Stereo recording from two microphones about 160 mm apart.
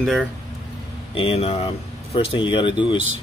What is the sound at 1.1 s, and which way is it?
Speech, 35° left (ahead or behind).